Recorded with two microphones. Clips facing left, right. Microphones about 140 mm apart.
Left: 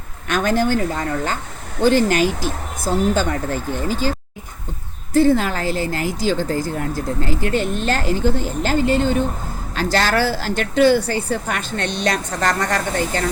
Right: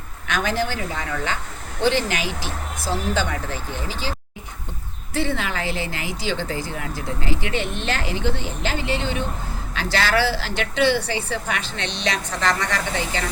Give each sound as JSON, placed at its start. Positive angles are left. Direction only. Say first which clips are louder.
{"t": 0.3, "sound": "speech", "louder": "left 6 dB", "side_deg": 50}
{"t": 5.1, "sound": "speech", "louder": "left 9 dB", "side_deg": 40}